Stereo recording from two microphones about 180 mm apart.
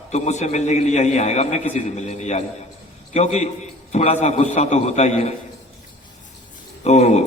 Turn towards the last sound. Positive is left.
turn(degrees=40)  # may be behind; listen again after turning